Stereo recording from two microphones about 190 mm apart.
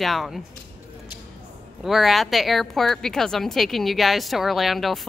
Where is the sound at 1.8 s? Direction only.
Centre (ahead or behind).